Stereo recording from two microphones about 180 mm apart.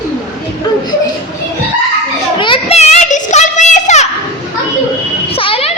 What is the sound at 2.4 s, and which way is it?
Children playing, 30° left (ahead or behind).